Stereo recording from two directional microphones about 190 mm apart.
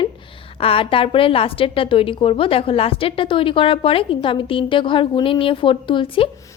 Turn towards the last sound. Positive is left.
turn(degrees=25)  # may be behind; listen again after turning